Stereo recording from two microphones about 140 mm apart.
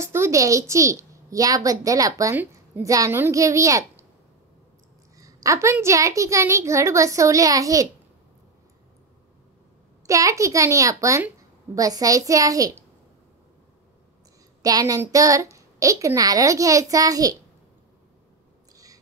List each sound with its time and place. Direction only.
0.0 s a child's voice: 20° right (ahead or behind)
5.1 s a child's voice: 25° right (ahead or behind)
10.0 s a child's voice: 25° right (ahead or behind)
14.6 s a child's voice: 25° right (ahead or behind)